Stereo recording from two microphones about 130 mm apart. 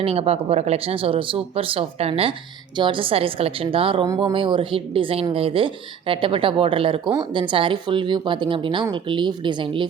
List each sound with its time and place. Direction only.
0.0 s speech: 50° right (ahead or behind)
2.7 s speech: 40° right (ahead or behind)